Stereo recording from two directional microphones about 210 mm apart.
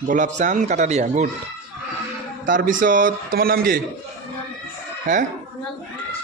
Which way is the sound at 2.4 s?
40° right (ahead or behind).